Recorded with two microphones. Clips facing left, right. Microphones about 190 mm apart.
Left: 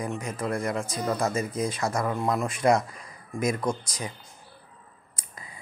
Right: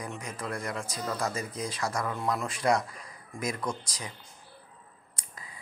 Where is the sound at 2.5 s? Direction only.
25° left (ahead or behind).